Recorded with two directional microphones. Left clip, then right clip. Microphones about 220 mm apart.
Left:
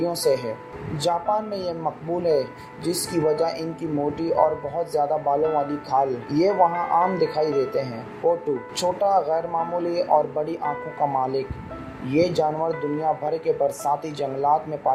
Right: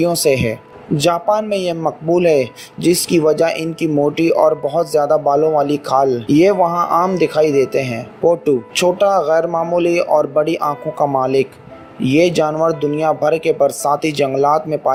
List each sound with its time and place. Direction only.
0.0 s speech: 50° right (ahead or behind)